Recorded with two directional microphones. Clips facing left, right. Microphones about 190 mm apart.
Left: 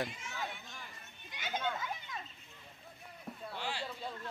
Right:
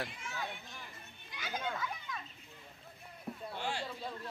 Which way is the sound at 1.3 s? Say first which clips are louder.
Left 2 dB; 25° left (ahead or behind).